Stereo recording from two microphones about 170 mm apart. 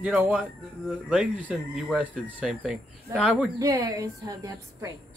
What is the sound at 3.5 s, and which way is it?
A woman's voice, 20° right (ahead or behind).